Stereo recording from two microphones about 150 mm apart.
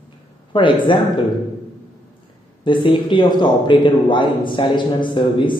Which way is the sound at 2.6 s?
30° left (ahead or behind).